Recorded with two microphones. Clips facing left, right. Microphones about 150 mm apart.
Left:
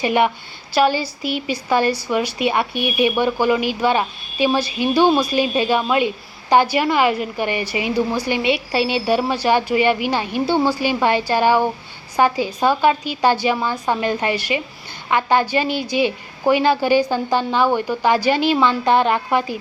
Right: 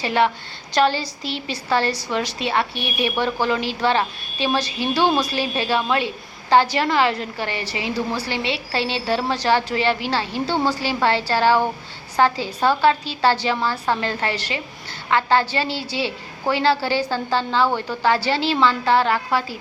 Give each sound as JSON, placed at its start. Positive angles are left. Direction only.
{"t": 0.0, "sound": "a woman's voice", "side_deg": 15}